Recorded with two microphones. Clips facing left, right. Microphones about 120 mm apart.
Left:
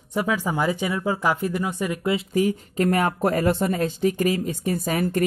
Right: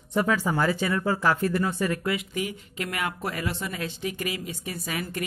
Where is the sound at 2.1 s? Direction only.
40° left (ahead or behind).